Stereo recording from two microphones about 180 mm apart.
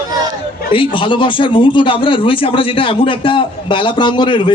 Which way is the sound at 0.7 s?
30° left (ahead or behind).